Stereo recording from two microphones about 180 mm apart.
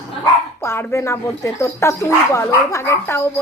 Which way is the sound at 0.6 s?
15° left (ahead or behind).